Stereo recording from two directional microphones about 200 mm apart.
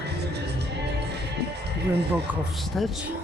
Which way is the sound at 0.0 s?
55° right (ahead or behind).